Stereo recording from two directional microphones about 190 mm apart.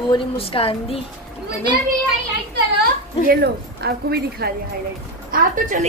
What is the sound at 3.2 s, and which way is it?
A woman's voice, 55° right (ahead or behind).